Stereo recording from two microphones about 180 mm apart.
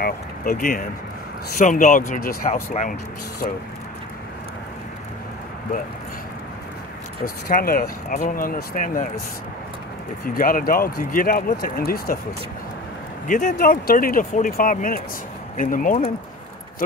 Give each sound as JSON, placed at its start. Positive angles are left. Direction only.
{"t": 0.0, "sound": "speech", "side_deg": 50}
{"t": 7.4, "sound": "speech", "side_deg": 55}
{"t": 10.2, "sound": "speech", "side_deg": 50}
{"t": 13.3, "sound": "speech", "side_deg": 45}